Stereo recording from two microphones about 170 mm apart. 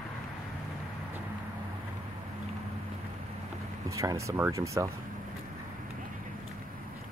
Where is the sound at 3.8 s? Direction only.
20° right (ahead or behind).